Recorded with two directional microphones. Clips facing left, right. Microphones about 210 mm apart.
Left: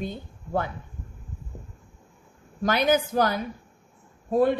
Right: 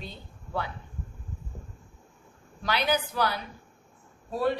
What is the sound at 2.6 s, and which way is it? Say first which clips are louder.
A woman's voice: left 6 dB; 45° left (ahead or behind).